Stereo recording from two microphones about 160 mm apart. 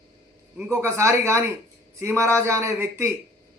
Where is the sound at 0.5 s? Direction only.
15° right (ahead or behind).